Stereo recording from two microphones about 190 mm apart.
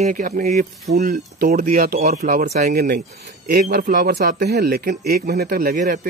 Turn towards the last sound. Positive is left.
turn(degrees=-45)  # may be behind; listen again after turning